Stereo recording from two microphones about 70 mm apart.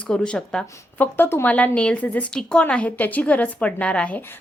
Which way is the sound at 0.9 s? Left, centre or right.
Left.